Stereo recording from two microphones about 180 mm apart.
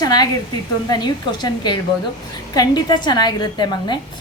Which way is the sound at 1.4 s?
25° left (ahead or behind).